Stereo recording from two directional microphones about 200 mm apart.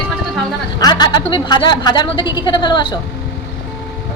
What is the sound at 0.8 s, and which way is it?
A woman's voice, 20° left (ahead or behind).